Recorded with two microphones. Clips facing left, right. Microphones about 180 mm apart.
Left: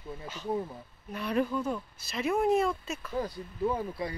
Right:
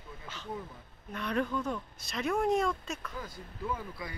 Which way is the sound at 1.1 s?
5° left (ahead or behind).